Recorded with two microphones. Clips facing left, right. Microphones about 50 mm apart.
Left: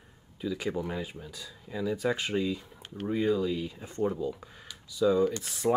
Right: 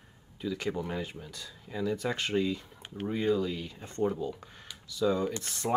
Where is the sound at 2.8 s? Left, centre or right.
Centre.